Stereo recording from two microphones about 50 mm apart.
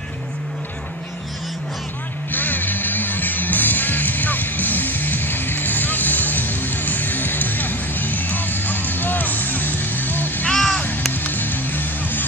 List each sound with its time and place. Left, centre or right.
2.3 s music: left
10.5 s crow: centre
11.1 s music: left